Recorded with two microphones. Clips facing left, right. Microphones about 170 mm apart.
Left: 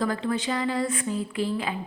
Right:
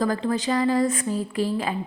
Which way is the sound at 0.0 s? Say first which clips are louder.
Right 3 dB; 40° right (ahead or behind).